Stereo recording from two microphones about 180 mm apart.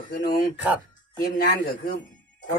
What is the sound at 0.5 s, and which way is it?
Speech, 10° right (ahead or behind).